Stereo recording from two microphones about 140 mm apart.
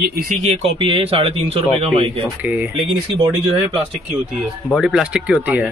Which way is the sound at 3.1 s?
35° right (ahead or behind).